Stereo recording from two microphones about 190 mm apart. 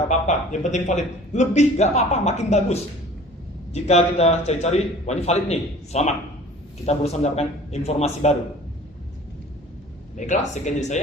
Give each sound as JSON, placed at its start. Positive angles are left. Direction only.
{"t": 0.1, "sound": "a man's voice", "side_deg": 40}
{"t": 10.2, "sound": "a man's voice", "side_deg": 40}